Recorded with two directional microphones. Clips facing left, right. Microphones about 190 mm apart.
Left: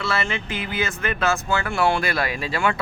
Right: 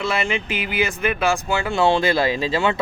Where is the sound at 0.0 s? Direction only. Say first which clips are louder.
Right 3 dB; 15° right (ahead or behind).